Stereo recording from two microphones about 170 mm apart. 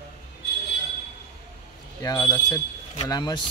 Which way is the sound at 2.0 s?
25° left (ahead or behind).